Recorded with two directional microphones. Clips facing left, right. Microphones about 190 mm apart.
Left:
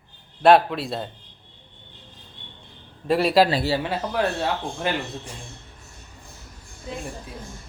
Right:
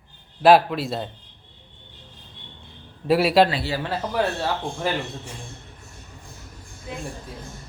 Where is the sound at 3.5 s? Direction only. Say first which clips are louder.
Left 4 dB; 35° left (ahead or behind).